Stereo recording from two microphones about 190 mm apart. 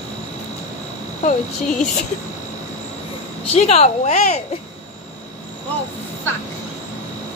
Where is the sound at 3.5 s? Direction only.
35° left (ahead or behind).